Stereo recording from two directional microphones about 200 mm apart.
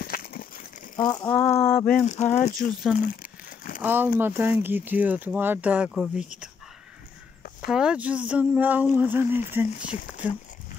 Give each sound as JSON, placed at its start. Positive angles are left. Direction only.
{"t": 0.0, "sound": "a sound", "side_deg": 45}
{"t": 1.0, "sound": "speech", "side_deg": 15}
{"t": 2.0, "sound": "speech", "side_deg": 35}
{"t": 3.0, "sound": "crumpling", "side_deg": 45}
{"t": 3.8, "sound": "speech", "side_deg": -10}
{"t": 7.6, "sound": "speech", "side_deg": -5}